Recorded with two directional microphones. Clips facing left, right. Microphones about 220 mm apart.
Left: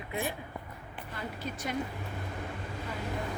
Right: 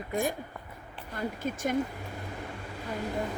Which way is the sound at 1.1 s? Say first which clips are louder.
Right 6 dB; 50° right (ahead or behind).